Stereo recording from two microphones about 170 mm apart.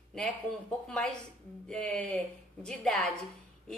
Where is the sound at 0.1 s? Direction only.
5° left (ahead or behind).